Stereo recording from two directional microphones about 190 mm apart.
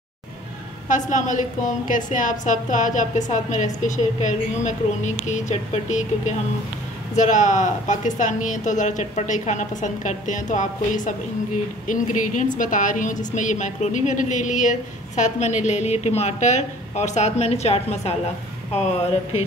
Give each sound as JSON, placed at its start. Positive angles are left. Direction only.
{"t": 0.8, "sound": "a woman's voice", "side_deg": 40}